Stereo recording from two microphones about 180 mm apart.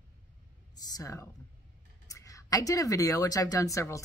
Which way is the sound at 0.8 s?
20° left (ahead or behind).